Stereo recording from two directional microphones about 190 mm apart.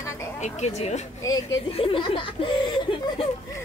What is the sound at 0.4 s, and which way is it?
Speech, 35° left (ahead or behind).